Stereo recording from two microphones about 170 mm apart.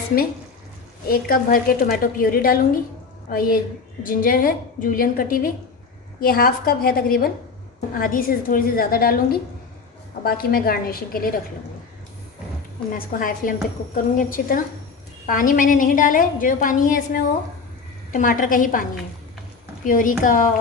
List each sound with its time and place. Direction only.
1.0 s a woman's voice: 60° left (ahead or behind)
12.9 s a woman's voice: 55° left (ahead or behind)